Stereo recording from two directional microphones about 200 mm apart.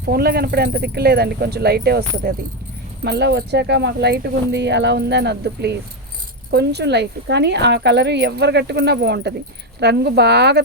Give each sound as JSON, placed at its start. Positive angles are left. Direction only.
{"t": 0.0, "sound": "speech", "side_deg": -50}